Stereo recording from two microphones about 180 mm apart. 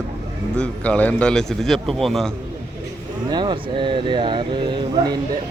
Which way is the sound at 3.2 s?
25° right (ahead or behind).